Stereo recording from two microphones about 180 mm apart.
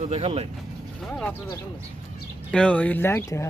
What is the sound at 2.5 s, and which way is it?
Speech, 5° left (ahead or behind).